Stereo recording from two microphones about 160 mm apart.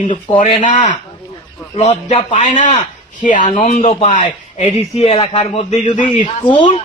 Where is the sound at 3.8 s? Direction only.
40° left (ahead or behind).